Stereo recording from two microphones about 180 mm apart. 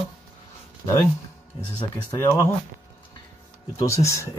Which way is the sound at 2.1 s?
15° left (ahead or behind).